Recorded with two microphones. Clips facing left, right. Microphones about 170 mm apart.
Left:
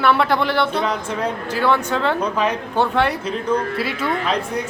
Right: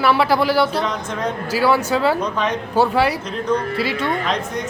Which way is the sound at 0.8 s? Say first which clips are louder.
Left 1 dB; 10° left (ahead or behind).